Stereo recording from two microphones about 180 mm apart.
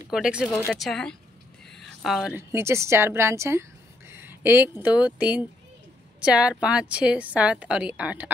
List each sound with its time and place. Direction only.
0.1 s speech: 5° right (ahead or behind)
1.7 s a sound: centre (ahead or behind)
2.3 s a woman's voice: 15° right (ahead or behind)